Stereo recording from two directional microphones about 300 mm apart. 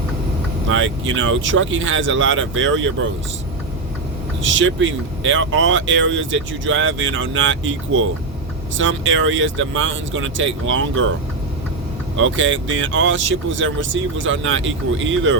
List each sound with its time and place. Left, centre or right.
0.7 s speech: right
4.4 s speech: right
12.1 s speech: right